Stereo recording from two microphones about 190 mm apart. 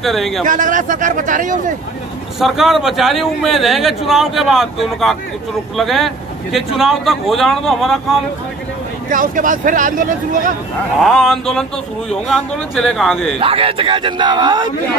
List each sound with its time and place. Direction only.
0.0 s speech: centre (ahead or behind)
0.5 s speech: 45° right (ahead or behind)
2.4 s speech: centre (ahead or behind)
9.1 s speech: 45° right (ahead or behind)
11.0 s speech: centre (ahead or behind)
13.4 s a man's voice: 30° right (ahead or behind)